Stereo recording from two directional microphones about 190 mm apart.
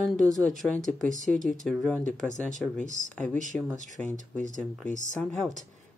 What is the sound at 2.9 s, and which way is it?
Speech, 40° right (ahead or behind).